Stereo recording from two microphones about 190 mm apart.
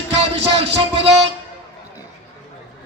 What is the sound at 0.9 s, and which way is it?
Speech, 35° right (ahead or behind).